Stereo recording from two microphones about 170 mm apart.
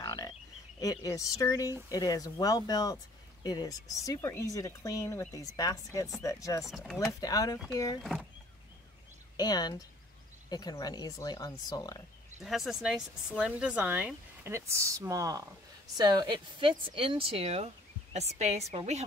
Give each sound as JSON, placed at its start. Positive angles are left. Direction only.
{"t": 0.0, "sound": "frog", "side_deg": 25}
{"t": 0.7, "sound": "speech", "side_deg": 20}
{"t": 6.6, "sound": "speech", "side_deg": 0}
{"t": 7.1, "sound": "speech", "side_deg": 20}
{"t": 8.0, "sound": "speech", "side_deg": 0}
{"t": 9.4, "sound": "speech", "side_deg": 25}
{"t": 12.4, "sound": "speech", "side_deg": 0}
{"t": 18.7, "sound": "speech", "side_deg": -40}